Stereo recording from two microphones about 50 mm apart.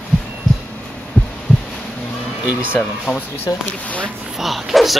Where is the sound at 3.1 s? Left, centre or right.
Left.